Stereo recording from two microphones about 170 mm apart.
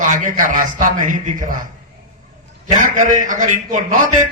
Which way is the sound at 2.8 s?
50° right (ahead or behind).